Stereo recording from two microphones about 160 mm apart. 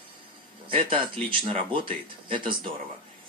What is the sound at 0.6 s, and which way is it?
Speech, 35° right (ahead or behind).